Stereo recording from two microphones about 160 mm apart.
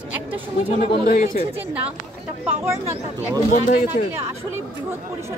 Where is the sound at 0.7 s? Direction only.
55° left (ahead or behind).